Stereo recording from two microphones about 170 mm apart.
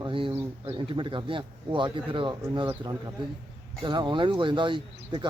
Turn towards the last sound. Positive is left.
turn(degrees=-30)  # may be behind; listen again after turning